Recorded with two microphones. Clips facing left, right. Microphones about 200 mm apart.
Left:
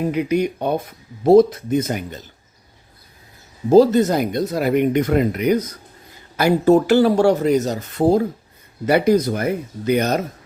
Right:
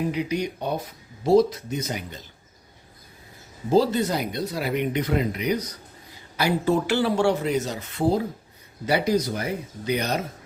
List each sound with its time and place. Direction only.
0.1 s speech: 55° left (ahead or behind)
3.7 s speech: 45° left (ahead or behind)